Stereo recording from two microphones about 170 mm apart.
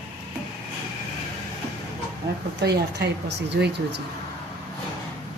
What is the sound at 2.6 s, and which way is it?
Speech, 80° right.